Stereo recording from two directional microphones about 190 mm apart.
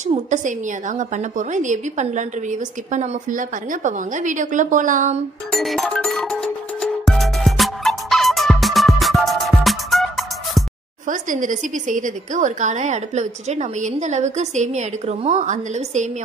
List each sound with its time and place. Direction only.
0.0 s a woman's voice: 40° right (ahead or behind)
5.5 s music: centre (ahead or behind)
11.1 s a woman's voice: 45° right (ahead or behind)